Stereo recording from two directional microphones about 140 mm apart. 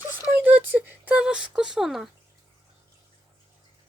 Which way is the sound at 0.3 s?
15° right (ahead or behind).